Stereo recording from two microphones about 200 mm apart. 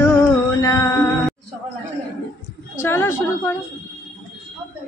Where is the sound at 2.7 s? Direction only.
10° left (ahead or behind).